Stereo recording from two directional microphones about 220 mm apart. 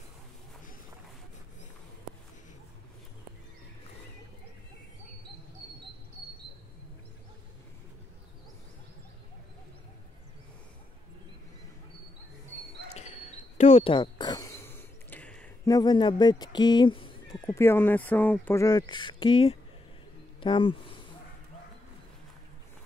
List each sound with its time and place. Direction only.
12.9 s a sound: 30° left (ahead or behind); by 15.5 s 5° left (ahead or behind)
15.6 s speech: 20° left (ahead or behind)
17.5 s speech: 10° left (ahead or behind)